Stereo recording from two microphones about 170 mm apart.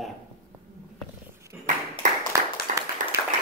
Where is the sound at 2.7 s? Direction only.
50° right (ahead or behind).